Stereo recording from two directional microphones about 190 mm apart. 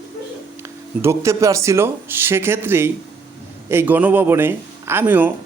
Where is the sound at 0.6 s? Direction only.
15° right (ahead or behind).